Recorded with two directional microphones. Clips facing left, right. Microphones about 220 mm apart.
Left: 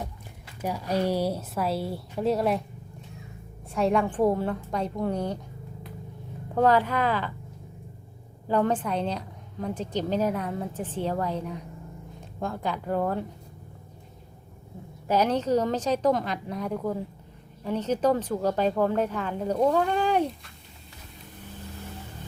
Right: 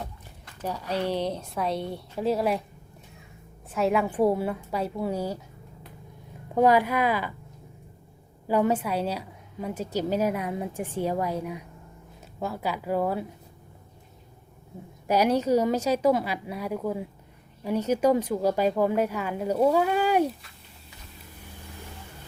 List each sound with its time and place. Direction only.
0.0 s speech: 10° left (ahead or behind)
3.7 s a woman's voice: 5° right (ahead or behind)
6.5 s a woman's voice: 10° right (ahead or behind)
8.4 s a woman's voice: 10° right (ahead or behind)
15.0 s a woman's voice: 10° right (ahead or behind)